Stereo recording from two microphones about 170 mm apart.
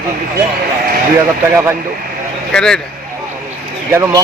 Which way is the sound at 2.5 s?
5° left (ahead or behind).